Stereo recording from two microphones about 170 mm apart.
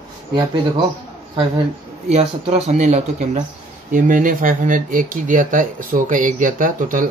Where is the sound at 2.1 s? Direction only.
40° right (ahead or behind).